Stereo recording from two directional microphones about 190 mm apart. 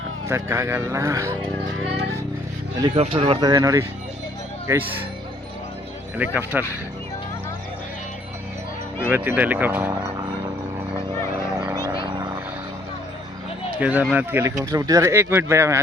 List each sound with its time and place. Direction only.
0.3 s speech: 15° right (ahead or behind)
2.8 s speech: 25° right (ahead or behind)
6.1 s speech: 10° right (ahead or behind)
9.0 s speech: 10° right (ahead or behind)
11.6 s a sound: 15° right (ahead or behind)
13.7 s speech: 5° right (ahead or behind)